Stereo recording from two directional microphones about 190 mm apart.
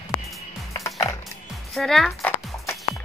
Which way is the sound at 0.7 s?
15° left (ahead or behind).